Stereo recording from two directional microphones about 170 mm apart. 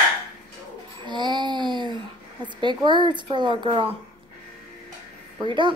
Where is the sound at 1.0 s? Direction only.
25° right (ahead or behind).